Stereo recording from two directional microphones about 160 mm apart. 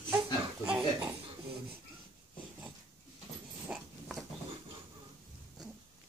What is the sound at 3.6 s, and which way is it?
Dog, centre (ahead or behind).